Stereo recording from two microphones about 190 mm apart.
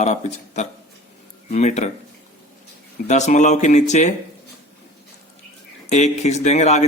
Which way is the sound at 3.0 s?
40° left (ahead or behind).